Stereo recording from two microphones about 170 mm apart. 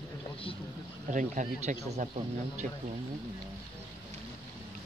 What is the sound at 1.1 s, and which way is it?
Speech, 50° right (ahead or behind).